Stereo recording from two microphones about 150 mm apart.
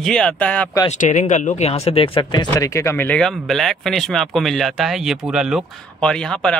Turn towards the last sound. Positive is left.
turn(degrees=5)  # may be behind; listen again after turning